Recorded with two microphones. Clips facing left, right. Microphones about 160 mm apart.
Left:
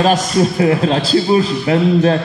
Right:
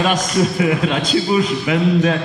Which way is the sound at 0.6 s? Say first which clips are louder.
Left 4 dB; 35° left (ahead or behind).